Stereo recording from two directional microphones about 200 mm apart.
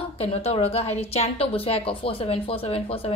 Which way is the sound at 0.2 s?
30° left (ahead or behind).